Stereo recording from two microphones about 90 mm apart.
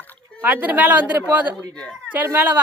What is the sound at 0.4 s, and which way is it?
Speech, 20° right (ahead or behind).